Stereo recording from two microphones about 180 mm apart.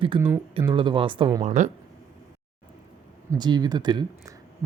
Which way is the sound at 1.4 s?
40° right (ahead or behind).